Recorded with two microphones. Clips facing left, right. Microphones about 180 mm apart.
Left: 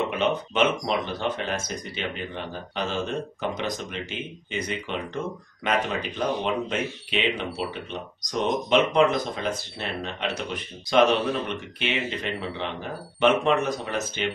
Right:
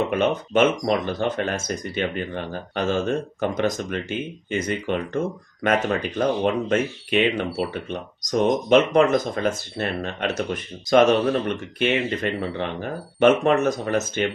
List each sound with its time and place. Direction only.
0.1 s speech: 45° right (ahead or behind)